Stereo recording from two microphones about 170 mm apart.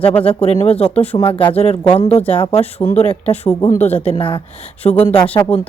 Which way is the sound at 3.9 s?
10° left (ahead or behind).